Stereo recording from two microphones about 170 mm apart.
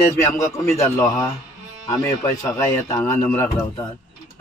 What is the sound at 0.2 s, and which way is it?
A man's voice, 15° left (ahead or behind).